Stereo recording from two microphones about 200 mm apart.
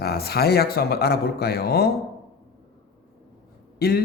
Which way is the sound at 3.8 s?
50° left (ahead or behind).